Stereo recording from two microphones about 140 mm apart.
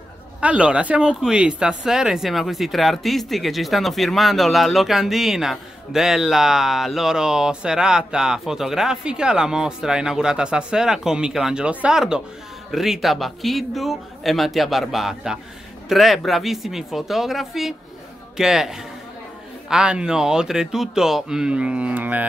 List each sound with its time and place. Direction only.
0.4 s speech: 10° right (ahead or behind)